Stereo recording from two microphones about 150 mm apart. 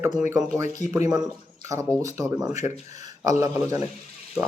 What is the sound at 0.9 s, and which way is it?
Speech, 20° right (ahead or behind).